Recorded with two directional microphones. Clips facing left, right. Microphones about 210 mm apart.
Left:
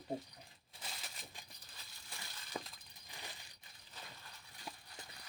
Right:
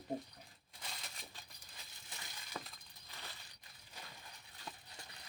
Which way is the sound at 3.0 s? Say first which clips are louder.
Left 1 dB; 15° left (ahead or behind).